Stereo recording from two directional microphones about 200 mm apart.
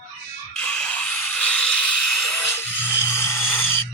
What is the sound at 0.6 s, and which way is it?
Music, 5° left (ahead or behind).